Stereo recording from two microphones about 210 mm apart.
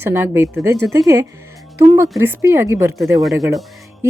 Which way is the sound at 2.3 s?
10° right (ahead or behind).